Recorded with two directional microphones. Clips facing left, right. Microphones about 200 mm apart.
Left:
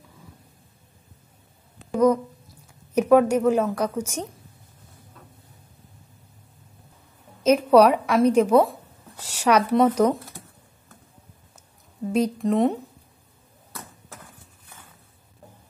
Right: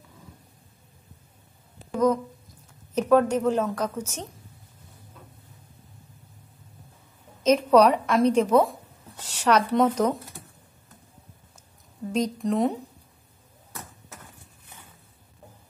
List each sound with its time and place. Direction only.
1.9 s a sound: 10° left (ahead or behind)
2.9 s a woman's voice: 10° left (ahead or behind)
7.4 s speech: 10° left (ahead or behind)
12.1 s a woman's voice: 5° left (ahead or behind)